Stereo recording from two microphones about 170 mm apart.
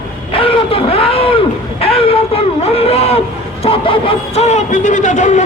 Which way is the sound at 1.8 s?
35° left (ahead or behind).